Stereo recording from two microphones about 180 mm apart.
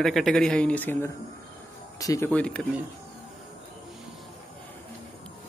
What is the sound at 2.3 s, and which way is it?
Speech, 5° left (ahead or behind).